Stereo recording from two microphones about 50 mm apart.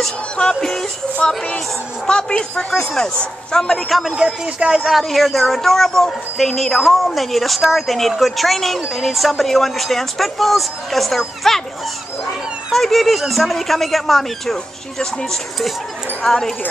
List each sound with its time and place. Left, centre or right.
0.4 s speech: centre
4.2 s speech: centre
4.8 s a woman's voice: centre
12.7 s a woman's voice: centre
16.3 s speech: centre